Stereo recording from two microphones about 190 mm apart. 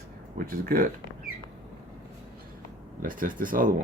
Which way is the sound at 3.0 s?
45° right (ahead or behind).